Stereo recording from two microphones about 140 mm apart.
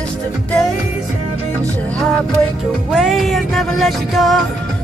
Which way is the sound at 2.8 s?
5° right (ahead or behind).